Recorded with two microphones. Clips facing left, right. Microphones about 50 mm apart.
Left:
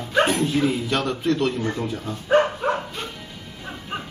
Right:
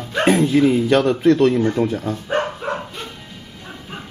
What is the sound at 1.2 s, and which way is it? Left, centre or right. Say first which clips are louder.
Speech: right 8 dB; right.